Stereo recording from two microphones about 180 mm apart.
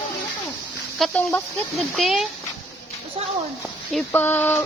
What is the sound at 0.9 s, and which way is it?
Speech, 5° left (ahead or behind).